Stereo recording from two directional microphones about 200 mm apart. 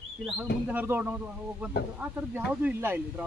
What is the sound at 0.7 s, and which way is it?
Speech, 10° right (ahead or behind).